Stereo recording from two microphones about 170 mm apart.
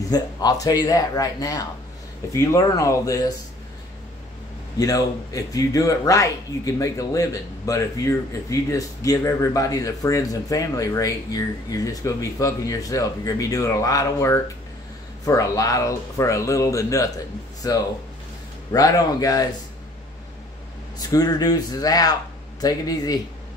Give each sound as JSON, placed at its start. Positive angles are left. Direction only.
{"t": 0.1, "sound": "a man's voice", "side_deg": 20}
{"t": 4.7, "sound": "a man's voice", "side_deg": 20}
{"t": 21.1, "sound": "a man's voice", "side_deg": 25}